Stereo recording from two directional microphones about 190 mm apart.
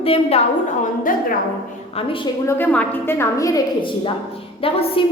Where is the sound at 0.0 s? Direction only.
30° left (ahead or behind).